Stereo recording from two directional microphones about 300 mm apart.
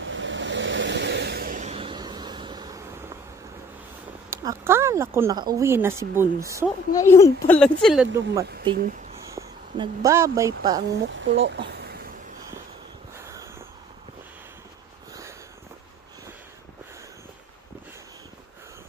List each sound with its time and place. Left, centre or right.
0.0 s vehicle: right; by 3.1 s centre
4.4 s speech: centre
6.9 s speech: centre
8.7 s speech: right
9.2 s speech: centre
11.1 s speech: right